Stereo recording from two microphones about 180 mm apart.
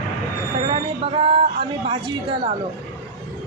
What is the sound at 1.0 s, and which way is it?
A woman's voice, 30° right (ahead or behind).